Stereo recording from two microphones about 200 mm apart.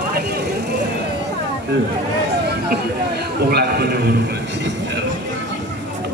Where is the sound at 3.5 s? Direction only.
55° right (ahead or behind).